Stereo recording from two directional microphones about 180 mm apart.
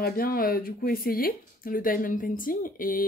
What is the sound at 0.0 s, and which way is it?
Speech, 55° left (ahead or behind).